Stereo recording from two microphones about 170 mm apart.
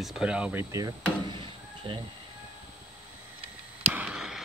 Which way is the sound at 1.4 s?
30° right (ahead or behind).